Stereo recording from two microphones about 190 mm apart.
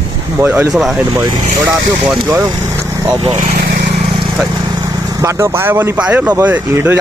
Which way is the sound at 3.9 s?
25° right (ahead or behind).